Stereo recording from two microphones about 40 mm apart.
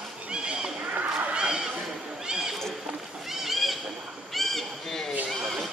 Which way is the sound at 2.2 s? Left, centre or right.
Centre.